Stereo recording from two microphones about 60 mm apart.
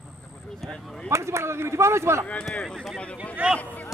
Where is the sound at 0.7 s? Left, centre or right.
Centre.